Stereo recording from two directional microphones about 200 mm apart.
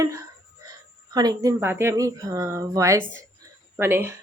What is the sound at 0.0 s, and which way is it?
A woman's voice, 15° right (ahead or behind).